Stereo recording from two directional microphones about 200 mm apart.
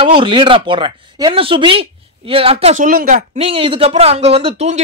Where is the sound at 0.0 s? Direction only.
25° right (ahead or behind).